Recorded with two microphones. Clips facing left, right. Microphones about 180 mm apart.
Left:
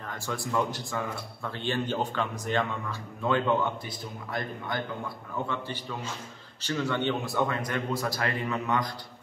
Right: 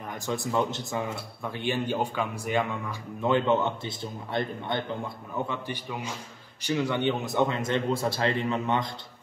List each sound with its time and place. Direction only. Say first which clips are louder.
0.1 s speech: right 2 dB; 20° right (ahead or behind)